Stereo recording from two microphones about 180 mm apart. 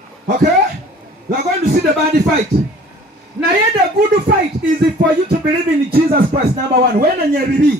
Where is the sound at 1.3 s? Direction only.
60° right (ahead or behind).